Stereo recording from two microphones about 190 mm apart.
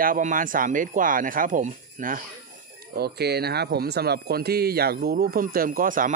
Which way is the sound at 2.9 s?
60° right (ahead or behind).